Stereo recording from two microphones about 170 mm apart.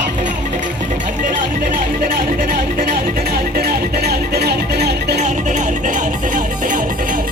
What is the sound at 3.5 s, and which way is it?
Music, 70° right (ahead or behind).